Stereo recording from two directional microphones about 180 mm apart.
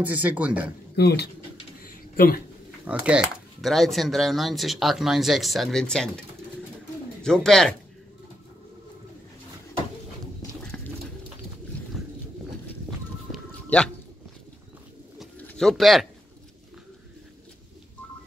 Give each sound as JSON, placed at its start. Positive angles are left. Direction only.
{"t": 0.0, "sound": "a man's voice", "side_deg": -10}
{"t": 0.9, "sound": "speech", "side_deg": 65}
{"t": 1.8, "sound": "a sound", "side_deg": 55}
{"t": 2.9, "sound": "a man's voice", "side_deg": -5}
{"t": 10.7, "sound": "bird", "side_deg": 5}
{"t": 13.3, "sound": "music", "side_deg": 5}
{"t": 15.1, "sound": "pigeon", "side_deg": 5}